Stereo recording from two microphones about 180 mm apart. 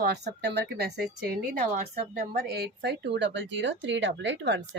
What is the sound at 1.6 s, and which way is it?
A woman's voice, 45° right (ahead or behind).